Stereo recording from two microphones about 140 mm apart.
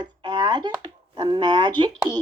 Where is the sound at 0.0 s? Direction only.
35° right (ahead or behind).